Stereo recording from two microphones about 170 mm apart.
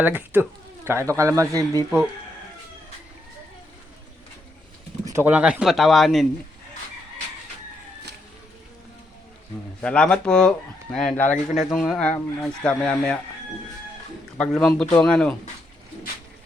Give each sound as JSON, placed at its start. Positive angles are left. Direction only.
{"t": 0.0, "sound": "speech", "side_deg": -10}
{"t": 5.0, "sound": "speech", "side_deg": -15}
{"t": 9.8, "sound": "speech", "side_deg": 5}
{"t": 14.3, "sound": "speech", "side_deg": 5}